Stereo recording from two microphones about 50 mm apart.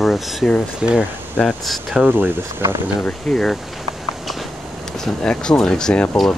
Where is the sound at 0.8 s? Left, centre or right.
Centre.